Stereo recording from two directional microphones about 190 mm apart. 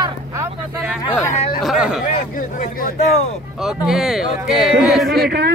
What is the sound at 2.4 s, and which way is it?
Speech, 50° left (ahead or behind).